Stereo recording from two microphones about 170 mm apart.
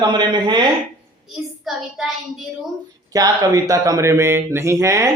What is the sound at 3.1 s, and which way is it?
Speech, 20° right (ahead or behind).